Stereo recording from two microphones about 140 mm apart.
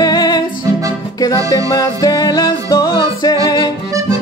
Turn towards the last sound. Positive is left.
turn(degrees=30)  # may be behind; listen again after turning